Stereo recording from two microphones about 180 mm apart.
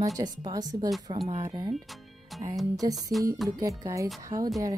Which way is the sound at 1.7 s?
Centre (ahead or behind).